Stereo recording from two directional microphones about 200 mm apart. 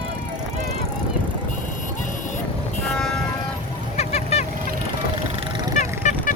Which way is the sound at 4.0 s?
30° left (ahead or behind).